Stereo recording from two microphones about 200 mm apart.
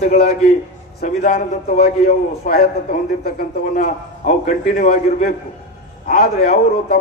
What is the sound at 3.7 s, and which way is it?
A man's voice, 35° left (ahead or behind).